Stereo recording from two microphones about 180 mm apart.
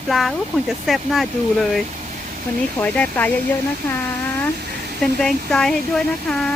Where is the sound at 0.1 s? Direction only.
Centre (ahead or behind).